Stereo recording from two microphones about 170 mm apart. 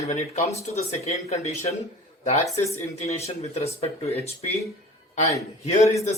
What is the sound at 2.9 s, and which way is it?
Speech, 40° left (ahead or behind).